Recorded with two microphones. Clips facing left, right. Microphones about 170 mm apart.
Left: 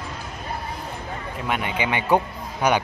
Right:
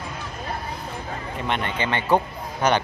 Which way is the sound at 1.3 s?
5° left (ahead or behind).